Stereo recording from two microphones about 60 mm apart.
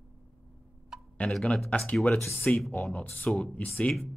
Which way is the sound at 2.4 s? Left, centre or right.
Left.